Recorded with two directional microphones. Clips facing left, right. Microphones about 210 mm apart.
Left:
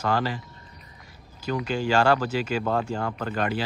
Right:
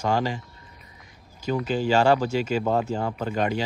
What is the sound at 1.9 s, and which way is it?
Speech, 10° right (ahead or behind).